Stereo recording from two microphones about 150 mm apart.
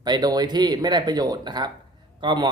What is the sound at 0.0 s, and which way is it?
A man's voice, 25° right (ahead or behind).